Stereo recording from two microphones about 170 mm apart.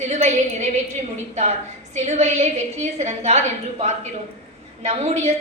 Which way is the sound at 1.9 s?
40° right (ahead or behind).